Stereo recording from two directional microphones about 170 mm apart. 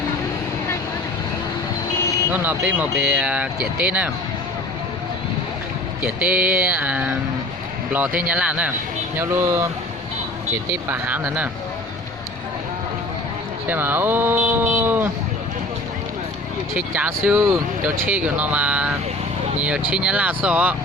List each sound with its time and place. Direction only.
2.3 s speech: 10° right (ahead or behind)
6.0 s speech: 5° right (ahead or behind)
10.8 s speech: 10° right (ahead or behind)
13.7 s speech: 10° right (ahead or behind)
16.7 s speech: 10° right (ahead or behind)